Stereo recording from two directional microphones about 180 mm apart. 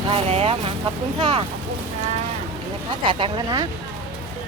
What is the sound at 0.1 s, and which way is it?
Speech, 35° right (ahead or behind).